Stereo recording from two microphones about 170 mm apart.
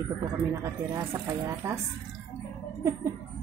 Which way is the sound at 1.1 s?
20° right (ahead or behind).